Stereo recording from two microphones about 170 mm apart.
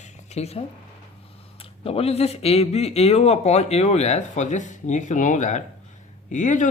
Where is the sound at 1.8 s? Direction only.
35° left (ahead or behind).